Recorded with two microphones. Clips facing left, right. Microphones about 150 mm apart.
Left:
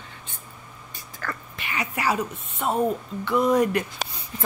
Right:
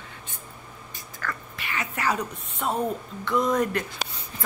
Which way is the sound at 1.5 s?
15° left (ahead or behind).